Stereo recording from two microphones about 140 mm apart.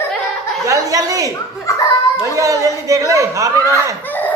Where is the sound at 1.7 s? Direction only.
20° left (ahead or behind).